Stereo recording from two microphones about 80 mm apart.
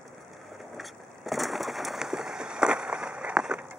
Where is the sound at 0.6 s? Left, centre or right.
Centre.